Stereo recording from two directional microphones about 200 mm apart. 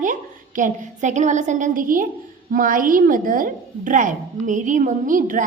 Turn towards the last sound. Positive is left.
turn(degrees=-40)  # may be behind; listen again after turning